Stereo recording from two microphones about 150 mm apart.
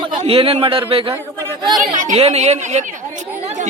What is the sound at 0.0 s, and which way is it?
A man's voice, 35° right (ahead or behind).